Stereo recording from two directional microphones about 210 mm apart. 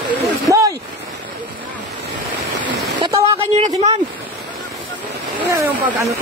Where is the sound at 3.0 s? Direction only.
25° right (ahead or behind).